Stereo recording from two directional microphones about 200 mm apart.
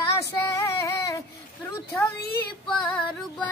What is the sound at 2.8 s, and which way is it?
Music, 5° left (ahead or behind).